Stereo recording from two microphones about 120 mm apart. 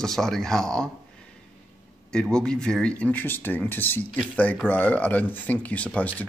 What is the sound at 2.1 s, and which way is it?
Speech, 5° left (ahead or behind).